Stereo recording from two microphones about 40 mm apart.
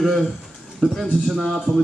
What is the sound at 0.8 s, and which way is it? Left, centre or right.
Speech, centre.